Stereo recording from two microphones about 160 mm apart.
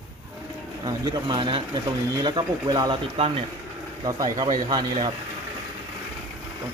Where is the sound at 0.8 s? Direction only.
25° right (ahead or behind).